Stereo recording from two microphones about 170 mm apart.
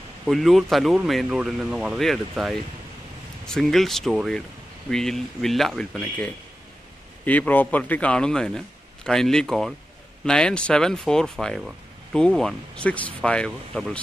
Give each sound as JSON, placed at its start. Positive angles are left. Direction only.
{"t": 0.3, "sound": "speech", "side_deg": 0}